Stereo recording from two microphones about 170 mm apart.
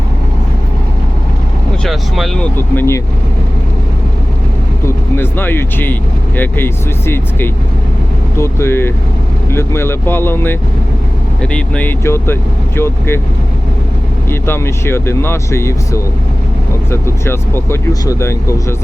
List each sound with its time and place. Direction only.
1.8 s speech: centre (ahead or behind)
2.6 s speech: 15° left (ahead or behind)
4.9 s speech: 10° left (ahead or behind)
14.3 s speech: 15° left (ahead or behind)